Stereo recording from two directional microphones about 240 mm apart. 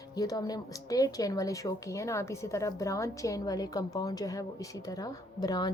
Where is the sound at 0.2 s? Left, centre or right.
Centre.